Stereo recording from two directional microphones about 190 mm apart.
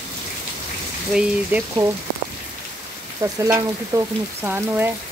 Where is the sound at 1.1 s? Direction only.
10° right (ahead or behind).